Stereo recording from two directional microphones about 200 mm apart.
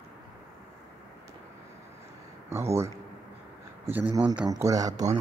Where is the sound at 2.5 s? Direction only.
15° right (ahead or behind).